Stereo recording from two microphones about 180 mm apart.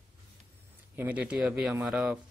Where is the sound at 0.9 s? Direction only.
10° right (ahead or behind).